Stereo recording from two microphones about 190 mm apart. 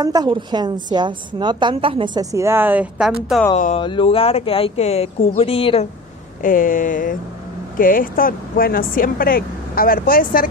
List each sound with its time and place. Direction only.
0.0 s a woman's voice: 20° right (ahead or behind)
3.5 s speech: 40° left (ahead or behind)
3.8 s speech: 25° left (ahead or behind)
6.4 s speech: 45° left (ahead or behind)